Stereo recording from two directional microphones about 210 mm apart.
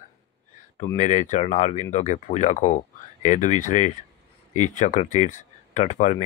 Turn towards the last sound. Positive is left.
turn(degrees=35)  # may be behind; listen again after turning